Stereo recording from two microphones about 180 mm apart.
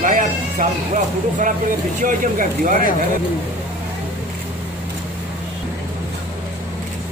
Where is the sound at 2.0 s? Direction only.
50° right (ahead or behind).